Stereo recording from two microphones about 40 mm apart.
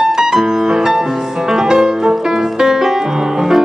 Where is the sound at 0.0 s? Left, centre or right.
Centre.